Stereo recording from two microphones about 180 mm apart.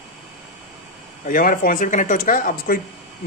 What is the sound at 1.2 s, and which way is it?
Speech, 50° left (ahead or behind).